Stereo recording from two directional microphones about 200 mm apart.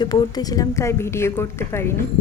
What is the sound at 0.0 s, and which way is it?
Speech, 20° left (ahead or behind).